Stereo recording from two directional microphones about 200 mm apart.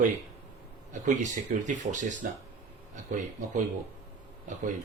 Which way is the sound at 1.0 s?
35° right (ahead or behind).